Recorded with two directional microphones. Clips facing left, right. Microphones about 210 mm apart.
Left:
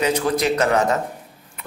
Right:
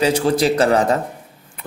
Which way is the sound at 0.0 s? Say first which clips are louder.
Right 3 dB; 30° right (ahead or behind).